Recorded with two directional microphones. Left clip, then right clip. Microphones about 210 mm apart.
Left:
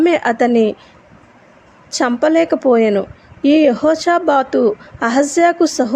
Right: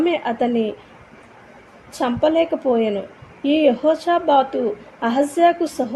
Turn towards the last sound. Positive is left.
turn(degrees=30)  # may be behind; listen again after turning